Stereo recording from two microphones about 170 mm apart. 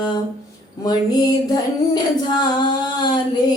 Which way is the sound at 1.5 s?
25° left (ahead or behind).